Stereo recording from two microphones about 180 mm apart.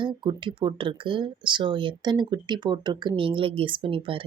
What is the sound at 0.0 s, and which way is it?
Speech, 25° right (ahead or behind).